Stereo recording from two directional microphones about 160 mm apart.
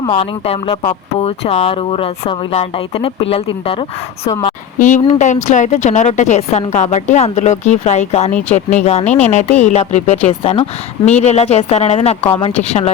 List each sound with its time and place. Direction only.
0.0 s speech: 35° left (ahead or behind)
4.8 s a woman's voice: 50° left (ahead or behind)